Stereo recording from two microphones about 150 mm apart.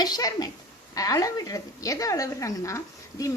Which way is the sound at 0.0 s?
25° left (ahead or behind).